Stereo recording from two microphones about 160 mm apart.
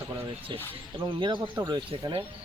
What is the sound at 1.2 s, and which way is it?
Speech, 30° right (ahead or behind).